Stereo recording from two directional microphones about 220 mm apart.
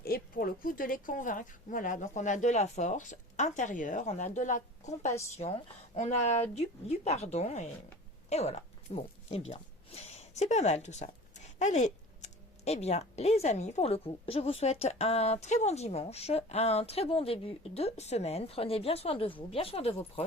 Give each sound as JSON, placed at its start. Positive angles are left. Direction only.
{"t": 0.0, "sound": "speech", "side_deg": 45}